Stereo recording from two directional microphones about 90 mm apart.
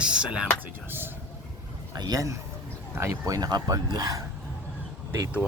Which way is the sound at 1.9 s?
45° right (ahead or behind).